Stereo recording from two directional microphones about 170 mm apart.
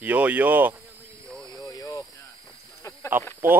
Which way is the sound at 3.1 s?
10° right (ahead or behind).